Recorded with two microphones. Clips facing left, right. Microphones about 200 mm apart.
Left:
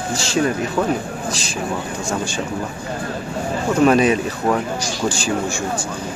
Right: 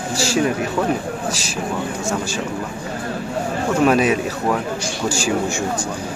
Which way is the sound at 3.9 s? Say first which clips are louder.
Left 2 dB; 5° right (ahead or behind).